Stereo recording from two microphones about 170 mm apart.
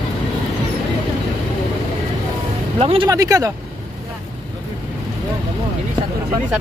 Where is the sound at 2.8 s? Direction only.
35° right (ahead or behind).